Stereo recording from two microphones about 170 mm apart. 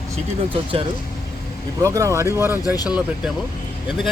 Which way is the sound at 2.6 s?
20° left (ahead or behind).